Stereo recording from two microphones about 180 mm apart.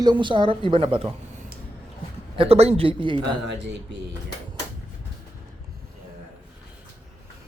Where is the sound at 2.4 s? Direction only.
35° right (ahead or behind).